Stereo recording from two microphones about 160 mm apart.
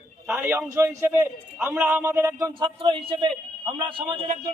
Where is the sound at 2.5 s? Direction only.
30° right (ahead or behind).